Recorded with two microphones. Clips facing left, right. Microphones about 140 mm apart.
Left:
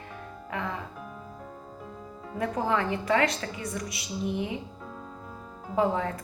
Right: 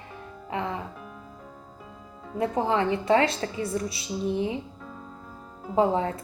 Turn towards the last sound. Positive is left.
turn(degrees=-30)  # may be behind; listen again after turning